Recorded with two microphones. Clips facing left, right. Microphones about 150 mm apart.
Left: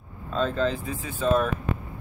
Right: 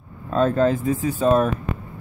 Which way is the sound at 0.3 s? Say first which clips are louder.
Right 7 dB; 50° right (ahead or behind).